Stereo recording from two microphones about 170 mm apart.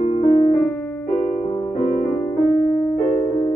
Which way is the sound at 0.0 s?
40° left (ahead or behind).